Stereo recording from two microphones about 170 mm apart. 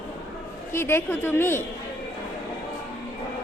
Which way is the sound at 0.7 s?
15° left (ahead or behind).